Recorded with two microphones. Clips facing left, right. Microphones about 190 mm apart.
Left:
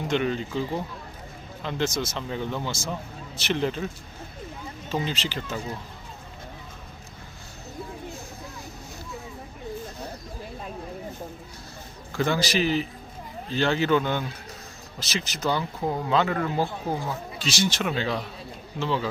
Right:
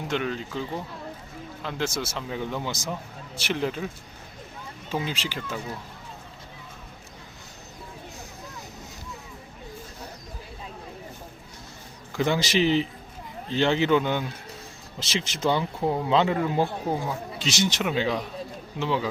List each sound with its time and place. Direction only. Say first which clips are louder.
0.1 s speech: left 3 dB; centre (ahead or behind)
1.6 s speech: left 2 dB; 10° right (ahead or behind)
4.9 s speech: left 1 dB; 10° right (ahead or behind)
12.1 s speech: right 1 dB; 20° right (ahead or behind)
14.9 s speech: right 2 dB; 25° right (ahead or behind)